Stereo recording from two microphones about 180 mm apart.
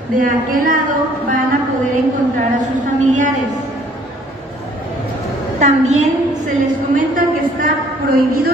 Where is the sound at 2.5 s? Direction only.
45° right (ahead or behind).